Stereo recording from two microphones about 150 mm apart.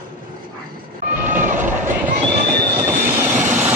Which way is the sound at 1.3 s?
60° right (ahead or behind).